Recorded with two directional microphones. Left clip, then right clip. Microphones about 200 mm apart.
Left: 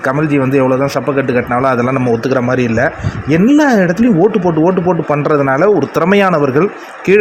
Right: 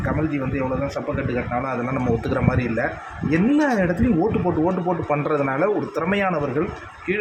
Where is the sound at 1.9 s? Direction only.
25° left (ahead or behind).